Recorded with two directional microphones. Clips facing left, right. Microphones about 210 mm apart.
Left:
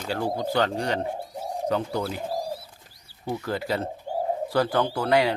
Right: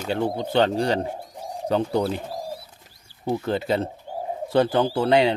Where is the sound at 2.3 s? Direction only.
Centre (ahead or behind).